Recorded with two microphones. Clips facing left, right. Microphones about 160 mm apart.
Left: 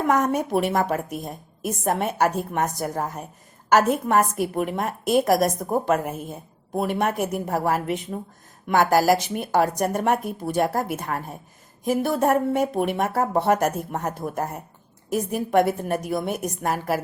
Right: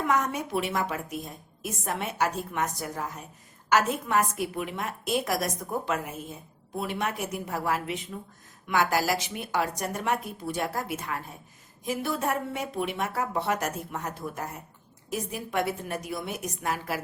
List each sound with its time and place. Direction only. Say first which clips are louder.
0.0 s a woman's voice: left 6 dB; 45° left (ahead or behind)